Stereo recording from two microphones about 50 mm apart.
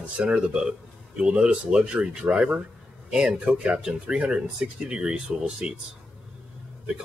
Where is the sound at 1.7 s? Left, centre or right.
Centre.